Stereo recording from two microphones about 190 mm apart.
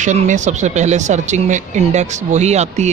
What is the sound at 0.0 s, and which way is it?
A man's voice, 40° right (ahead or behind).